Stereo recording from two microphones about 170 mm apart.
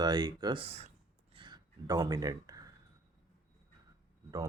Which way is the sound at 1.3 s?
25° right (ahead or behind).